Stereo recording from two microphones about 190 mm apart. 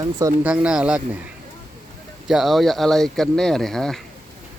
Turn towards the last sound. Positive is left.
turn(degrees=0)  # may be behind; listen again after turning